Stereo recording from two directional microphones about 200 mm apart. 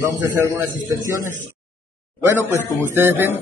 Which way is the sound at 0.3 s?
15° right (ahead or behind).